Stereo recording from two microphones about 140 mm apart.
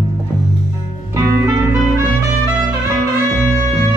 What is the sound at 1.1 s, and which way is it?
Music, 20° right (ahead or behind).